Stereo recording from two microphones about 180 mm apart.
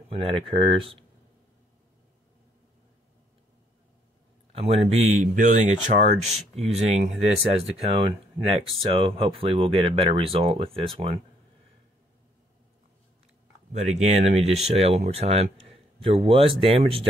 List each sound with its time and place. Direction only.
0.1 s speech: 30° right (ahead or behind)
4.5 s speech: 35° right (ahead or behind)
13.7 s speech: 40° right (ahead or behind)